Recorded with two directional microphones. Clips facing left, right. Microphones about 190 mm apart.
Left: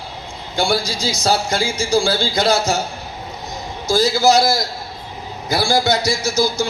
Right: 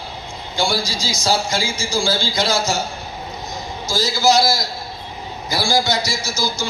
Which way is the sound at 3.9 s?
60° left (ahead or behind).